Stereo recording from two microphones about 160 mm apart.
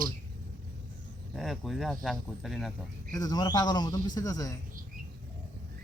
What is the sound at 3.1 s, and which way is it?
A man's voice, 25° left (ahead or behind).